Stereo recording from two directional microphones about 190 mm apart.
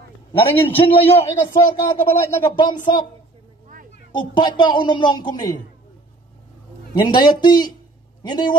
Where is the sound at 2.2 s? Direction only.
20° left (ahead or behind).